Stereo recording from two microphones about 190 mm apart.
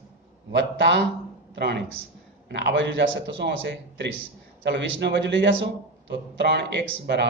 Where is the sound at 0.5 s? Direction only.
70° right (ahead or behind).